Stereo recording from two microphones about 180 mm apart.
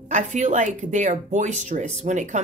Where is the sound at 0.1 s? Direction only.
40° right (ahead or behind).